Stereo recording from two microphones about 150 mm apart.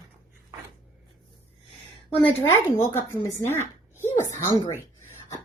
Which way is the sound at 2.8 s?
15° left (ahead or behind).